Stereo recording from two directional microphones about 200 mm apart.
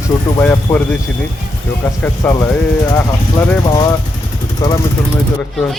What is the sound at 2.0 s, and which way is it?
Speech, 10° left (ahead or behind).